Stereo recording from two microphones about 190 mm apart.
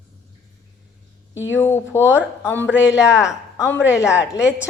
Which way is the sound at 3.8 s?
70° left (ahead or behind).